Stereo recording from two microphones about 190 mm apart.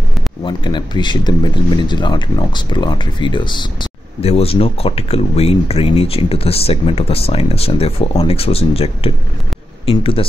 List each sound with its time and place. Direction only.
0.4 s speech: 25° left (ahead or behind)